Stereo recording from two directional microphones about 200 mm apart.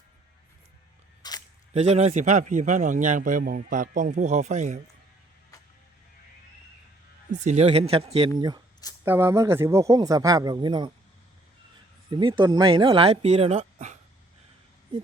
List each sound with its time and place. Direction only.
1.2 s single-lens reflex camera: 20° left (ahead or behind)
1.7 s a man's voice: 35° right (ahead or behind)
7.3 s speech: 35° right (ahead or behind)
9.0 s speech: 10° right (ahead or behind)
12.1 s speech: 25° right (ahead or behind)